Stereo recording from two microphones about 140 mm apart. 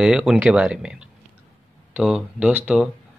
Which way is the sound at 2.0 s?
5° right (ahead or behind).